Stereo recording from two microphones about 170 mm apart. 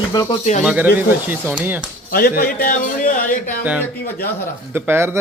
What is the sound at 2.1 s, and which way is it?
A man's voice, 60° left (ahead or behind).